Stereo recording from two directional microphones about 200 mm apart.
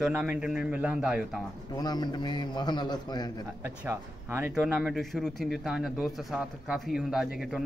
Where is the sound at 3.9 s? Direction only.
10° right (ahead or behind).